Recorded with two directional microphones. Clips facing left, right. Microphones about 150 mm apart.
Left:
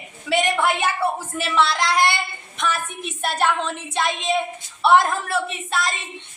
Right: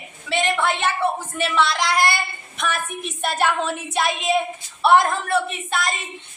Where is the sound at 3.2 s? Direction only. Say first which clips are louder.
Even; centre (ahead or behind).